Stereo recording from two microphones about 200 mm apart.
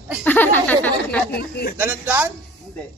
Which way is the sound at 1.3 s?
50° left (ahead or behind).